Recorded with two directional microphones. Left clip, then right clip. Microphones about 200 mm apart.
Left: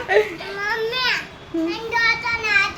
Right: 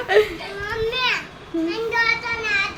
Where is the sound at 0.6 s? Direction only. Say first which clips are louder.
Left 1 dB; 20° left (ahead or behind).